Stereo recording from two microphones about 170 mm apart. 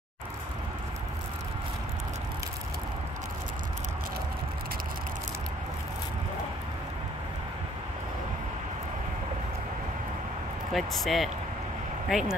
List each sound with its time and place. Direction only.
10.7 s speech: centre (ahead or behind)